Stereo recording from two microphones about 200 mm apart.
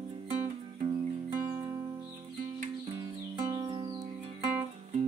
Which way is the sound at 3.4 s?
20° right (ahead or behind).